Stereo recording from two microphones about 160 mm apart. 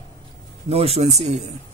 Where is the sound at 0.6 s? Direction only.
40° right (ahead or behind).